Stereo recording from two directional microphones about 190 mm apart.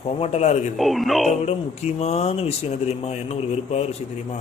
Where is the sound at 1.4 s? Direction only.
35° left (ahead or behind).